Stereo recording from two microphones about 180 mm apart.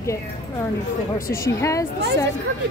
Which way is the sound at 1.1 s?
55° left (ahead or behind).